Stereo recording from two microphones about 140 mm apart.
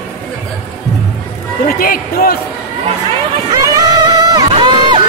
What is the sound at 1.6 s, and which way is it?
Speech, 90° left.